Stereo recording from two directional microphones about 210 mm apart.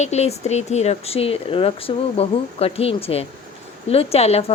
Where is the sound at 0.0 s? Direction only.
30° left (ahead or behind).